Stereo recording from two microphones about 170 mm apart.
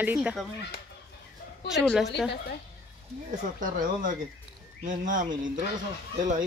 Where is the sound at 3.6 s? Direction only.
50° right (ahead or behind).